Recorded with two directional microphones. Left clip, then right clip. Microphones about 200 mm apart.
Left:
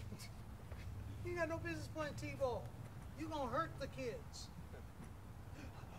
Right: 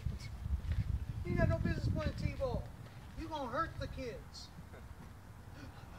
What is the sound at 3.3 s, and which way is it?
Speech, centre (ahead or behind).